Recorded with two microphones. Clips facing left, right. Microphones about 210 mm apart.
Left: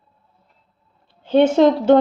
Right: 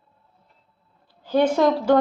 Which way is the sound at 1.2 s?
25° left (ahead or behind).